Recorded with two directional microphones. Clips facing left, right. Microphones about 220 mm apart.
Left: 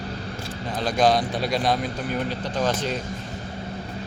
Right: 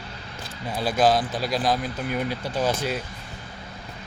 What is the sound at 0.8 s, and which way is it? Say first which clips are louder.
Speech: even; 5° right (ahead or behind).